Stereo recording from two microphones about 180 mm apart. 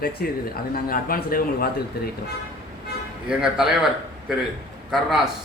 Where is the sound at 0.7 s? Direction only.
55° left (ahead or behind).